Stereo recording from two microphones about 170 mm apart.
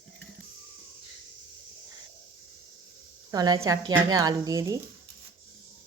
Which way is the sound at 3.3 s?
25° right (ahead or behind).